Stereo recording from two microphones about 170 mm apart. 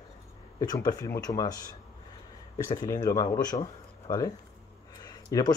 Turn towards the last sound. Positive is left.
turn(degrees=20)  # may be behind; listen again after turning